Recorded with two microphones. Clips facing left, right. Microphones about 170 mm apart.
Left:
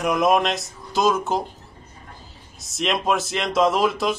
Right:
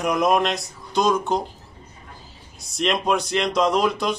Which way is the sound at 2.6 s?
Centre (ahead or behind).